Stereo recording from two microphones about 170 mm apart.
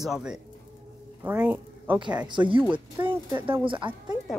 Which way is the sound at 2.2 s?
30° right (ahead or behind).